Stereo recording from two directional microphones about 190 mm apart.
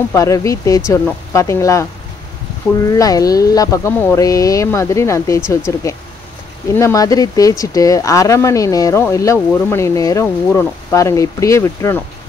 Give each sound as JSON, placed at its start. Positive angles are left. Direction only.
{"t": 0.1, "sound": "speech", "side_deg": 15}
{"t": 2.9, "sound": "speech", "side_deg": 20}